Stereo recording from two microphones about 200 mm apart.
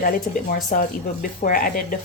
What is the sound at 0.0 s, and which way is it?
Speech, 45° left (ahead or behind).